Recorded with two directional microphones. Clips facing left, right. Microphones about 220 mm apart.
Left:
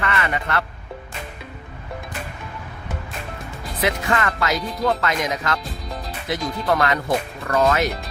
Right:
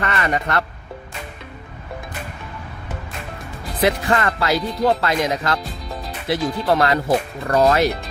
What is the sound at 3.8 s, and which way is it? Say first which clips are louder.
Speech: right 3 dB; 35° right (ahead or behind).